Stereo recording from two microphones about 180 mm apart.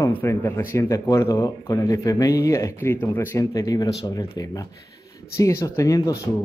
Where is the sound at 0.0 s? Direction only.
15° left (ahead or behind).